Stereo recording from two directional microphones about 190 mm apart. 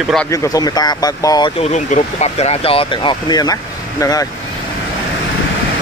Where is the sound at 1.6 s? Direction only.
40° left (ahead or behind); by 4.3 s 20° left (ahead or behind).